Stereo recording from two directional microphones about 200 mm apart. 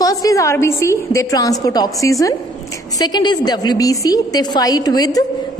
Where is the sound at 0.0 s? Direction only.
15° left (ahead or behind).